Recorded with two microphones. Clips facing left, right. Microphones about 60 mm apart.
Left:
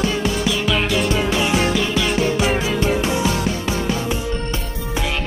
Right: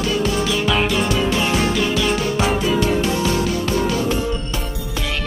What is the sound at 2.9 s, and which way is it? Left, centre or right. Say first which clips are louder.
Music: even; centre.